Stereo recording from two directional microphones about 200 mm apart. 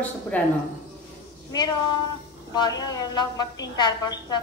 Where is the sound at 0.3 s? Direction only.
10° left (ahead or behind).